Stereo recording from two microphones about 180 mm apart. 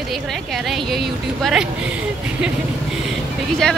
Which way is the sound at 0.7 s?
Centre (ahead or behind).